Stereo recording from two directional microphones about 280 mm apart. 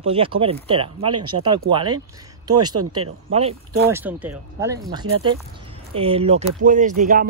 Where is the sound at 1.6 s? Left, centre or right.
Right.